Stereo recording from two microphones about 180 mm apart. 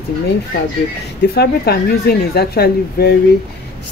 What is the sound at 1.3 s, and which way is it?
Speech, 60° left (ahead or behind).